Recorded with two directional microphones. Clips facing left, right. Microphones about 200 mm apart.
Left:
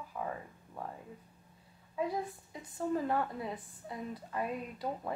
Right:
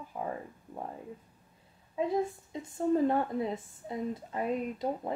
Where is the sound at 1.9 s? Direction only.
25° right (ahead or behind).